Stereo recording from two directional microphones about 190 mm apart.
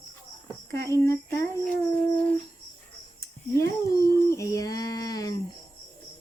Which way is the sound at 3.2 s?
15° left (ahead or behind).